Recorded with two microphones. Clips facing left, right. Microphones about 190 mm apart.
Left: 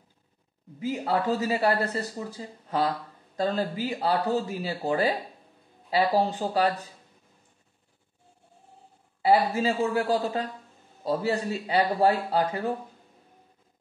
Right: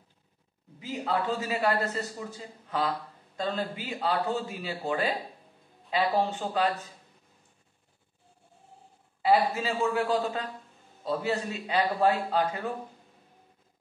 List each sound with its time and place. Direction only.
0.7 s speech: 40° left (ahead or behind)
9.2 s speech: 35° left (ahead or behind)